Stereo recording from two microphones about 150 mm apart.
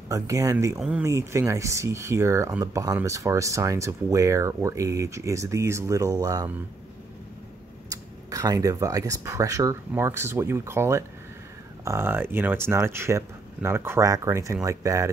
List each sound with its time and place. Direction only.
0.1 s speech: 20° right (ahead or behind)
0.7 s speech: 10° right (ahead or behind)
1.0 s speech: 20° right (ahead or behind)
7.9 s speech: 25° right (ahead or behind)